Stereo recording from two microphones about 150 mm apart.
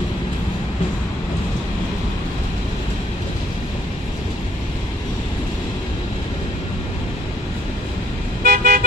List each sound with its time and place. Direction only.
8.5 s car: 90° right